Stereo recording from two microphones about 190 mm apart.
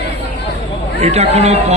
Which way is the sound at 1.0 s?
35° right (ahead or behind).